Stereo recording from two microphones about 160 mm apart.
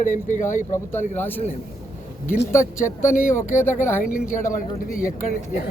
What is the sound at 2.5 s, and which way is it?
Speech, 15° left (ahead or behind).